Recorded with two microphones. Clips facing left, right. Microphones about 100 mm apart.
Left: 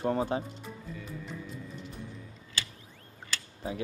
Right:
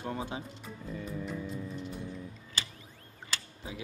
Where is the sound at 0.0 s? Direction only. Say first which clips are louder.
Left 8 dB; 40° left (ahead or behind).